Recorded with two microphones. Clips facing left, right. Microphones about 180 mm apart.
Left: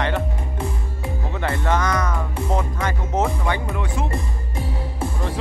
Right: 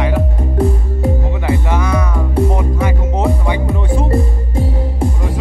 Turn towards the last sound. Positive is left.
turn(degrees=-30)  # may be behind; listen again after turning